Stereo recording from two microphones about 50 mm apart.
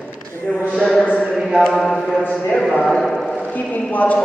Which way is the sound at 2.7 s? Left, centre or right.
Centre.